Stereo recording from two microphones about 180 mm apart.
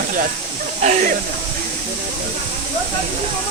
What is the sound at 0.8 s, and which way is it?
Speech, 40° right (ahead or behind).